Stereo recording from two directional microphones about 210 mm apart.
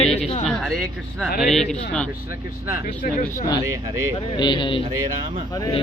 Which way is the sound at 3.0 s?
45° left (ahead or behind).